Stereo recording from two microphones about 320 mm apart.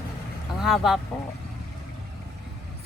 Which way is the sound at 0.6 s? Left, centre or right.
Centre.